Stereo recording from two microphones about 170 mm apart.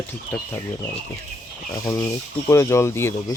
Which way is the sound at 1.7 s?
20° left (ahead or behind).